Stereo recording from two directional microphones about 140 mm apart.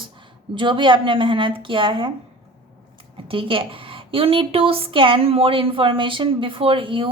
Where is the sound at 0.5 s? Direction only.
35° right (ahead or behind).